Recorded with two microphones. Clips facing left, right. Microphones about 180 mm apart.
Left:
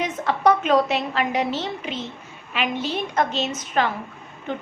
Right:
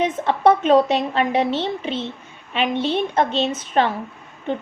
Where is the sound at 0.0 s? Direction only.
30° right (ahead or behind).